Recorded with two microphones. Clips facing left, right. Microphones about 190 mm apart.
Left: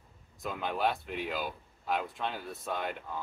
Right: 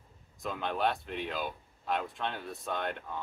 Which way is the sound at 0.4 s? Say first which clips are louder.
Even; 5° left (ahead or behind).